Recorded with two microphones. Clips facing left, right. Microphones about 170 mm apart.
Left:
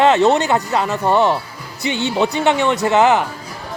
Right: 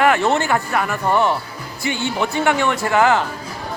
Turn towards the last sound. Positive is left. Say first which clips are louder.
# left 3 dB
turn(degrees=20)  # may be behind; listen again after turning